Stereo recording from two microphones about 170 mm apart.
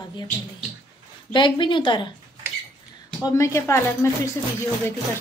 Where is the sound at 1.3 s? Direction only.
30° left (ahead or behind).